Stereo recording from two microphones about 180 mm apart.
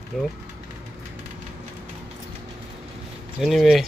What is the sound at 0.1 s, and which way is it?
Speech, centre (ahead or behind).